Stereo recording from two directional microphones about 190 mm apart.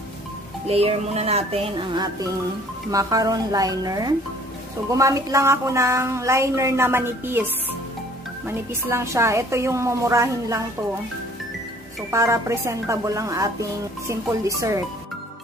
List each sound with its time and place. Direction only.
0.7 s speech: 30° right (ahead or behind)
2.9 s a woman's voice: 15° right (ahead or behind)
8.5 s a woman's voice: 15° right (ahead or behind)
12.1 s a woman's voice: 15° right (ahead or behind)